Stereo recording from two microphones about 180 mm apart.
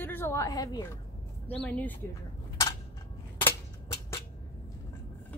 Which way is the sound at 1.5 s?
10° left (ahead or behind).